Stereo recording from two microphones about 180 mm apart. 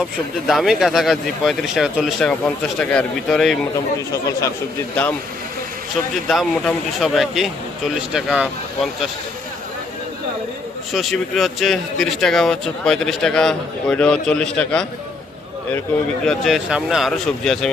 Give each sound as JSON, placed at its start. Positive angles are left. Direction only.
{"t": 0.0, "sound": "speech", "side_deg": 0}
{"t": 4.1, "sound": "speech", "side_deg": 15}
{"t": 6.2, "sound": "speech", "side_deg": 0}
{"t": 10.9, "sound": "speech", "side_deg": 0}
{"t": 16.2, "sound": "speech", "side_deg": 0}